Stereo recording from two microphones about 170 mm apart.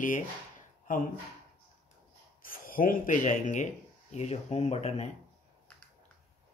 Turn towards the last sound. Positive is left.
turn(degrees=40)  # may be behind; listen again after turning